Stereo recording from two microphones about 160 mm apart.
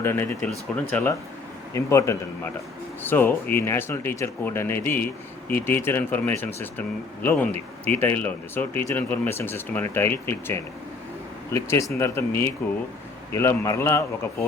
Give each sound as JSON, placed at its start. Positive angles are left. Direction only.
{"t": 0.0, "sound": "speech", "side_deg": 15}